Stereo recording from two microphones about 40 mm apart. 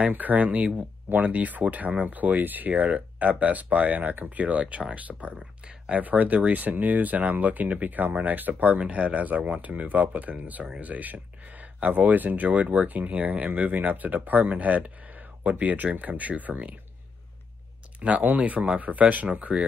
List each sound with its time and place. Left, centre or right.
0.1 s speech: right
8.7 s speech: right
18.2 s speech: right